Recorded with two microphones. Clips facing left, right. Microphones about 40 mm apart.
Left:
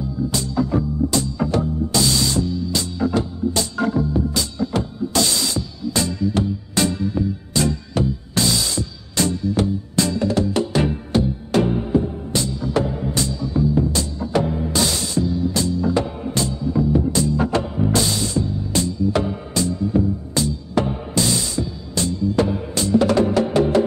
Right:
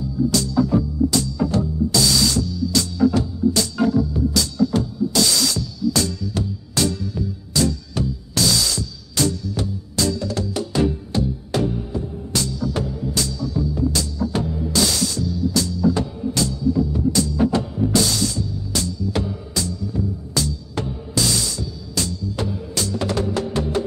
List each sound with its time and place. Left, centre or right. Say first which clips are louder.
0.3 s music: right 2 dB; left
17.4 s music: right 1 dB; left
17.7 s music: even; left